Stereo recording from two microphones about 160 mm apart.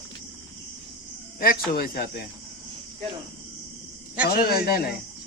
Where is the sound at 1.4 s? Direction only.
65° left (ahead or behind).